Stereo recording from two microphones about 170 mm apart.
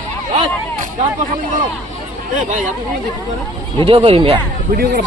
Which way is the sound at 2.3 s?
45° right (ahead or behind).